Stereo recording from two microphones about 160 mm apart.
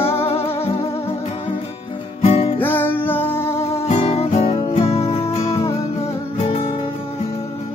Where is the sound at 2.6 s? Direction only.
15° left (ahead or behind).